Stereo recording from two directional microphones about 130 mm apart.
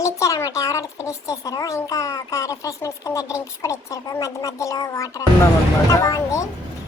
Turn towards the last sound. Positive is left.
turn(degrees=25)  # may be behind; listen again after turning